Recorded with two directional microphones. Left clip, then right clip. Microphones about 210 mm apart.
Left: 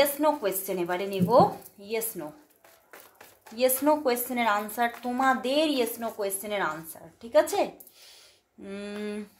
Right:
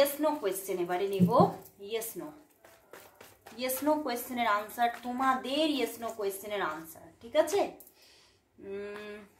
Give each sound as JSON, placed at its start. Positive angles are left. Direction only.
{"t": 0.0, "sound": "a woman's voice", "side_deg": 40}
{"t": 3.5, "sound": "a woman's voice", "side_deg": 40}
{"t": 8.6, "sound": "a woman's voice", "side_deg": 40}